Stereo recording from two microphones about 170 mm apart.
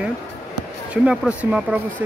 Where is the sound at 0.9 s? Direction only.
5° right (ahead or behind).